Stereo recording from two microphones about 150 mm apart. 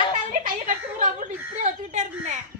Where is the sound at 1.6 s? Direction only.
55° right (ahead or behind).